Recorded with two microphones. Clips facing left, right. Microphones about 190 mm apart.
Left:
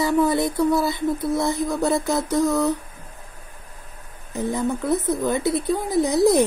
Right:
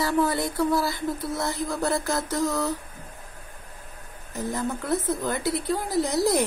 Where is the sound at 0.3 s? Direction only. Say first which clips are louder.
Left 5 dB; 20° left (ahead or behind).